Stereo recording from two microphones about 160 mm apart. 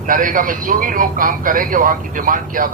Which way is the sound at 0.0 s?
55° right (ahead or behind).